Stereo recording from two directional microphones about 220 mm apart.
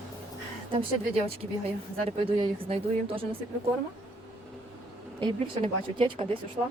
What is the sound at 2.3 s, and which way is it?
Speech, 25° right (ahead or behind).